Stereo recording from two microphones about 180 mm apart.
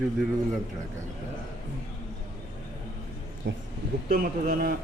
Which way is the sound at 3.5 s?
70° right (ahead or behind).